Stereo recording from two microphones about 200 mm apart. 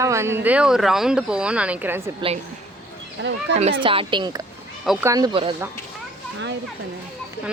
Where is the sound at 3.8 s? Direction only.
25° right (ahead or behind).